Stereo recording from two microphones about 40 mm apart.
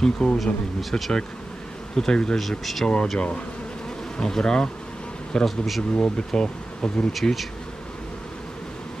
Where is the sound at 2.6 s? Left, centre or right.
Centre.